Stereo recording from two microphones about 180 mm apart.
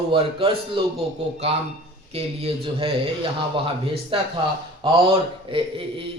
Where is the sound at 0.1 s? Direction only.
30° right (ahead or behind).